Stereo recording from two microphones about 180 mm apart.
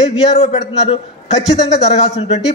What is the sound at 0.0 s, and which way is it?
A man's voice, 35° left (ahead or behind).